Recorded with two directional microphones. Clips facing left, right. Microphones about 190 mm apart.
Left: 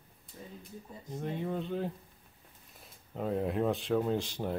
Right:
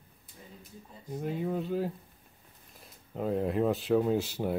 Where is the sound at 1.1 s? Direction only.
5° right (ahead or behind).